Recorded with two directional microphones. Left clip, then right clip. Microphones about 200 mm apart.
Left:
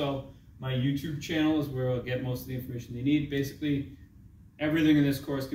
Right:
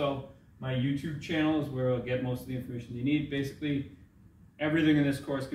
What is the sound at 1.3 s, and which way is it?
Speech, 10° right (ahead or behind).